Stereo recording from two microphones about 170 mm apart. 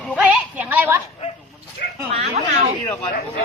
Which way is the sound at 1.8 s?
75° left (ahead or behind).